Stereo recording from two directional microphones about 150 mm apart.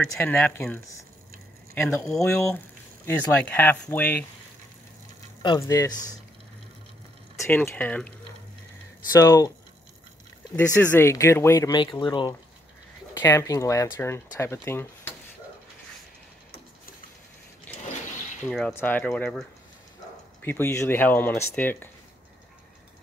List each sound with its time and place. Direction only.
0.0 s speech: 10° left (ahead or behind)
2.1 s speech: 20° left (ahead or behind)
5.4 s speech: 25° left (ahead or behind)
7.4 s speech: 15° left (ahead or behind)
9.2 s speech: 25° left (ahead or behind)
10.5 s speech: 15° left (ahead or behind); by 12.4 s 30° left (ahead or behind)
13.1 s speech: 20° left (ahead or behind)
18.7 s speech: 15° left (ahead or behind)
20.4 s speech: 15° left (ahead or behind)